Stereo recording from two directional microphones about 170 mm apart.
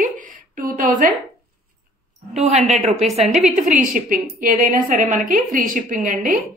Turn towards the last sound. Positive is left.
turn(degrees=-55)  # may be behind; listen again after turning